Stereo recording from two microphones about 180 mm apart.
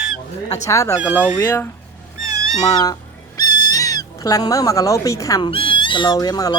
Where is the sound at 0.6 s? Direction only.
15° left (ahead or behind).